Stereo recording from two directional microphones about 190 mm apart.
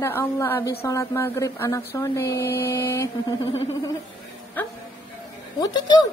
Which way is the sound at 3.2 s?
25° left (ahead or behind).